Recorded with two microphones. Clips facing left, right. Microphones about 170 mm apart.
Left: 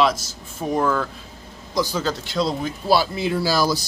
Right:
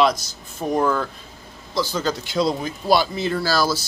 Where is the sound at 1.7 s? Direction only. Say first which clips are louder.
Left 1 dB; 15° left (ahead or behind).